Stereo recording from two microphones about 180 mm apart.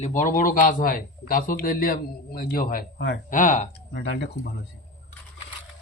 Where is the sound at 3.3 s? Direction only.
45° left (ahead or behind).